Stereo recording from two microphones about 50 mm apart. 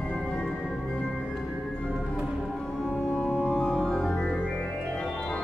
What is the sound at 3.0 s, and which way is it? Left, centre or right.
Organ, centre.